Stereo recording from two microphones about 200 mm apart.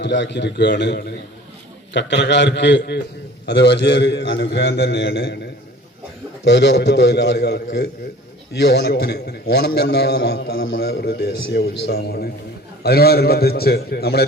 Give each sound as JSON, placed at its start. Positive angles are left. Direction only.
{"t": 0.0, "sound": "a man's voice", "side_deg": 60}
{"t": 6.4, "sound": "a man's voice", "side_deg": 60}